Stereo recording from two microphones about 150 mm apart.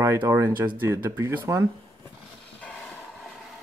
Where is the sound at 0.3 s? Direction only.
20° right (ahead or behind).